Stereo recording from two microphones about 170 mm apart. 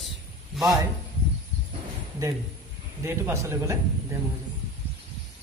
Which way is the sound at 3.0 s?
15° right (ahead or behind).